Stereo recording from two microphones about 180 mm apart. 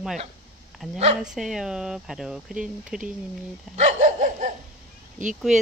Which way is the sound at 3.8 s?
45° right (ahead or behind).